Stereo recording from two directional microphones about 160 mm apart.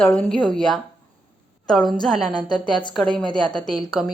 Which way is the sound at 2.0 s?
5° left (ahead or behind).